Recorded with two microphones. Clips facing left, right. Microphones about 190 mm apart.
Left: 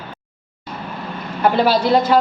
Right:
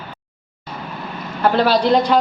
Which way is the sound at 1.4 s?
10° left (ahead or behind).